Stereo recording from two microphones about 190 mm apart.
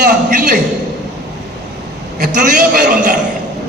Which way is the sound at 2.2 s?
45° right (ahead or behind).